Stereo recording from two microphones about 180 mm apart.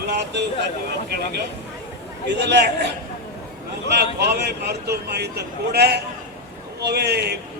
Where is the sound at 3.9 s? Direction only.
65° right (ahead or behind).